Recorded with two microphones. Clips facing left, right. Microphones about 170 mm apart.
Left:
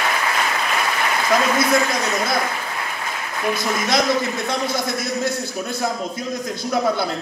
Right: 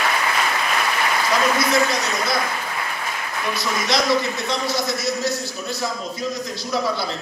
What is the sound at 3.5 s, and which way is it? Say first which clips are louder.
A man's voice: left 2 dB; 50° left (ahead or behind).